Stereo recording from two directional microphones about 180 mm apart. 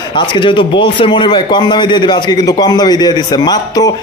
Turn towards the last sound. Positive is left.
turn(degrees=20)  # may be behind; listen again after turning